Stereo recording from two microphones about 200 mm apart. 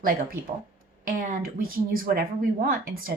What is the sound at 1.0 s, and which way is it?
Speech, 45° right (ahead or behind).